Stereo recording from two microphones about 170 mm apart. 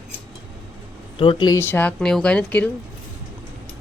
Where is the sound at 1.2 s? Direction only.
30° left (ahead or behind).